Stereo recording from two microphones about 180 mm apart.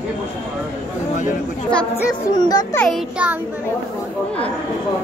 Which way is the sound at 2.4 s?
20° left (ahead or behind).